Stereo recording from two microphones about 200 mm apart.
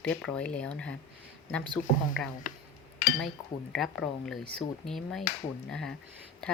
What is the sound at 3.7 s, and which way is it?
Speech, centre (ahead or behind).